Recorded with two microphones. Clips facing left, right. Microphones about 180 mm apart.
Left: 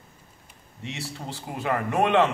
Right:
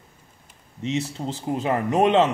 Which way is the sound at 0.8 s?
20° right (ahead or behind).